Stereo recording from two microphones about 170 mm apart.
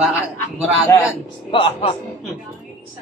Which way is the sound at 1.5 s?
30° left (ahead or behind).